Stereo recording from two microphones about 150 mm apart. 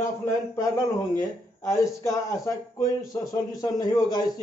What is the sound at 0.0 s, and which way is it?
Speech, 20° left (ahead or behind).